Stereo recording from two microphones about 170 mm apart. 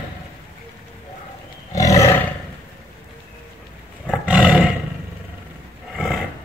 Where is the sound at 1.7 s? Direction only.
20° left (ahead or behind).